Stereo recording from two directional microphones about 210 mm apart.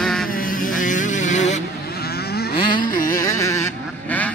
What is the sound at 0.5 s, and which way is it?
Vehicle, 40° left (ahead or behind).